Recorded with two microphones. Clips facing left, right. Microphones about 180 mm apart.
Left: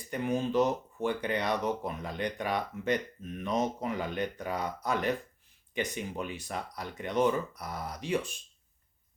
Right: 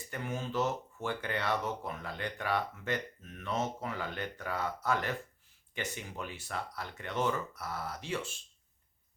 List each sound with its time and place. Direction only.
0.1 s speech: 15° left (ahead or behind)